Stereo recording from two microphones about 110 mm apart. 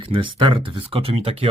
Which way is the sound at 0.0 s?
50° right (ahead or behind).